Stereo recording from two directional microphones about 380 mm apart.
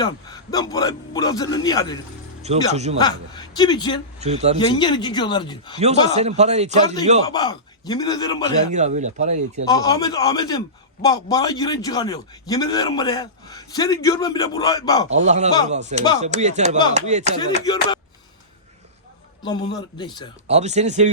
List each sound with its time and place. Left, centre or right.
0.0 s a man's voice: centre
2.4 s speech: centre
3.0 s a man's voice: centre
4.2 s speech: centre
4.5 s a man's voice: centre
6.1 s speech: centre
7.3 s a man's voice: centre
8.7 s speech: centre
9.6 s a man's voice: centre
15.3 s speech: centre
19.4 s a man's voice: centre
20.5 s speech: centre